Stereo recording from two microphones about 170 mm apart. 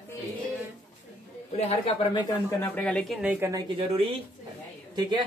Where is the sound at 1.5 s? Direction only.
35° left (ahead or behind).